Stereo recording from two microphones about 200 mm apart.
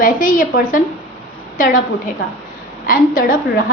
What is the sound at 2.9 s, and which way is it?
Speech, 45° left (ahead or behind).